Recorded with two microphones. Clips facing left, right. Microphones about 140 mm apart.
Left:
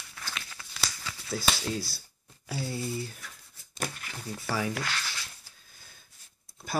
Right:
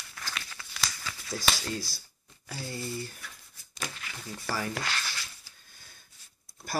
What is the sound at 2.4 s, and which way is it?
Speech, 5° left (ahead or behind).